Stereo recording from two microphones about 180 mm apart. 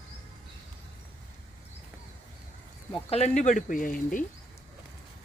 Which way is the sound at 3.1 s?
35° left (ahead or behind).